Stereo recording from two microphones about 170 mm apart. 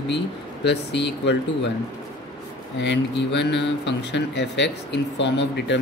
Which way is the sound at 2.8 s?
90° left.